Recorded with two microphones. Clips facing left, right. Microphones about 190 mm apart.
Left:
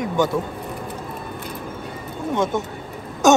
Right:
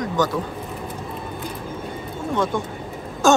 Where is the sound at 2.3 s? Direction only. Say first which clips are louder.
Left 1 dB; 25° left (ahead or behind).